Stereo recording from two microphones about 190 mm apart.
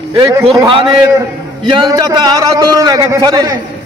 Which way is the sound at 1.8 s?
20° right (ahead or behind).